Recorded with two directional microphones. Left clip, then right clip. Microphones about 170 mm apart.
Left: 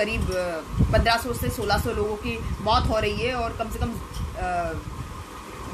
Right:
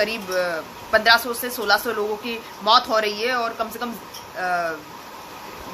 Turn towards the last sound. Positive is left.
turn(degrees=15)  # may be behind; listen again after turning